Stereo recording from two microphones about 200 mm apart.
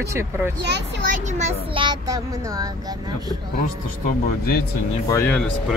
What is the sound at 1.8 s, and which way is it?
Speech, 20° right (ahead or behind).